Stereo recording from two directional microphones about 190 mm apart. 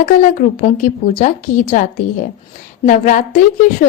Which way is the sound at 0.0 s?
45° left (ahead or behind).